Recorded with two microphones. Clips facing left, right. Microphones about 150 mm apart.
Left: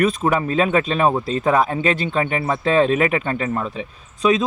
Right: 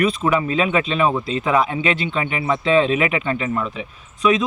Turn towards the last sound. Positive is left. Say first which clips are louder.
# even
turn(degrees=35)  # may be behind; listen again after turning